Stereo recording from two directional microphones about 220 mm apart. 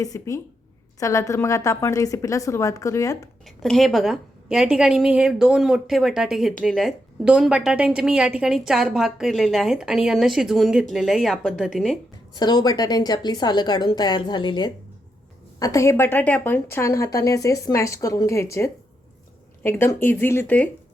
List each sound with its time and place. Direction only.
0.0 s a woman's voice: 15° left (ahead or behind)
3.4 s a woman's voice: centre (ahead or behind)
12.3 s a woman's voice: 20° left (ahead or behind)